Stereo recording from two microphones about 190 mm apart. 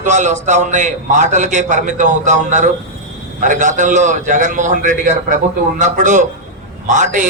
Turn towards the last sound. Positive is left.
turn(degrees=-40)  # may be behind; listen again after turning